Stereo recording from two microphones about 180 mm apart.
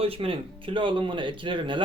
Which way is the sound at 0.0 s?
30° right (ahead or behind).